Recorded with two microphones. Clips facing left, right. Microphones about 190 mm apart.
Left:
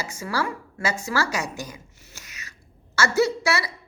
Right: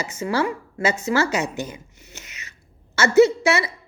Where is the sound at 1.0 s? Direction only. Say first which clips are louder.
Right 5 dB; 25° right (ahead or behind).